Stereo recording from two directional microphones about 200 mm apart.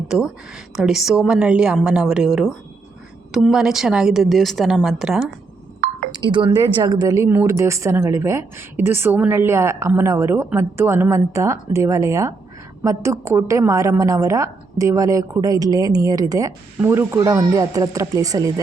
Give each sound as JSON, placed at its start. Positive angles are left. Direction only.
{"t": 0.8, "sound": "a woman's voice", "side_deg": 0}
{"t": 6.1, "sound": "speech", "side_deg": -25}